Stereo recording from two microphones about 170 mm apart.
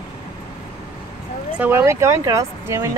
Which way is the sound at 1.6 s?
15° right (ahead or behind).